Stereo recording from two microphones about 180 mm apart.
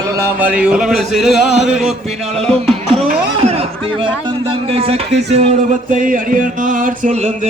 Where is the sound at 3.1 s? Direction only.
35° right (ahead or behind).